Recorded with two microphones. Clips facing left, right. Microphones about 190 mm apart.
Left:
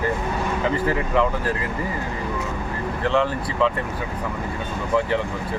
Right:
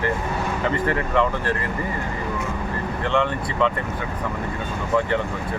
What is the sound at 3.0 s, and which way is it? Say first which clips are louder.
Speech: left 1 dB; 5° left (ahead or behind).